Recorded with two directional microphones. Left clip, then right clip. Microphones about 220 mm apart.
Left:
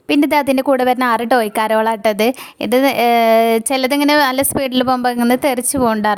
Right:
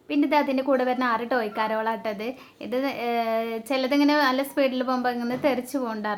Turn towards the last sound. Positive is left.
turn(degrees=50)  # may be behind; listen again after turning